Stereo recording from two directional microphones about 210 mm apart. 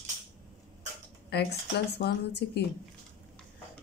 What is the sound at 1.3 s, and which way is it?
Speech, 50° left (ahead or behind).